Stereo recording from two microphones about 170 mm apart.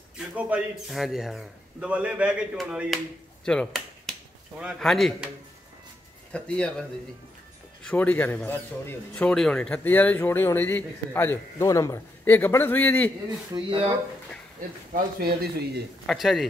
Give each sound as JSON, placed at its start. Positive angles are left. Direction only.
{"t": 0.3, "sound": "a man's voice", "side_deg": -5}
{"t": 6.3, "sound": "a man's voice", "side_deg": 5}
{"t": 13.5, "sound": "speech", "side_deg": -30}
{"t": 15.1, "sound": "speech", "side_deg": -60}
{"t": 16.1, "sound": "a man's voice", "side_deg": 0}